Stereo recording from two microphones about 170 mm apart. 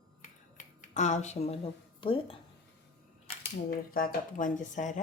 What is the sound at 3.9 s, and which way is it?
Speech, 55° left (ahead or behind).